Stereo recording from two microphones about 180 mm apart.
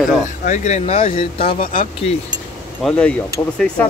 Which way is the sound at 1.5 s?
50° left (ahead or behind).